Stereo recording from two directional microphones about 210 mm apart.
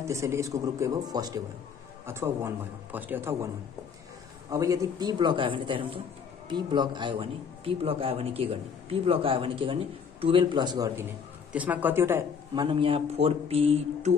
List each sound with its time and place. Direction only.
0.0 s speech: 15° right (ahead or behind)
4.5 s speech: 15° right (ahead or behind)
11.5 s speech: 5° right (ahead or behind)
12.6 s speech: 25° right (ahead or behind)